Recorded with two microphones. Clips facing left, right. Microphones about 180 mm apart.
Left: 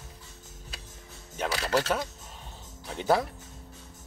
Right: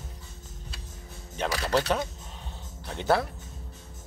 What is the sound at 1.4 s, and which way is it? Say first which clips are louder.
Speech: right 1 dB; 10° left (ahead or behind).